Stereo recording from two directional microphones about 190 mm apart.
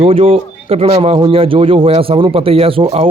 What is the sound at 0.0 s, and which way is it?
Speech, 30° right (ahead or behind).